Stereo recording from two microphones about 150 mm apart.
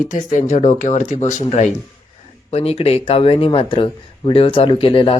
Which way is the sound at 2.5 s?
45° left (ahead or behind).